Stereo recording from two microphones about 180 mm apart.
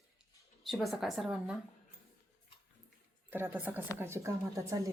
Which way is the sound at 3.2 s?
10° right (ahead or behind).